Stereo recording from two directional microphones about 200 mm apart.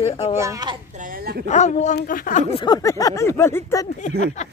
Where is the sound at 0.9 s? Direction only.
45° right (ahead or behind).